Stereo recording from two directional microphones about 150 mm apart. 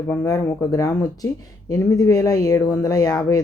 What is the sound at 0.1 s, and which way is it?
Speech, 15° left (ahead or behind).